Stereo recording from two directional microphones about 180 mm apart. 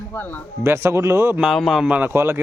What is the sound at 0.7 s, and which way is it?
A man's voice, 15° right (ahead or behind).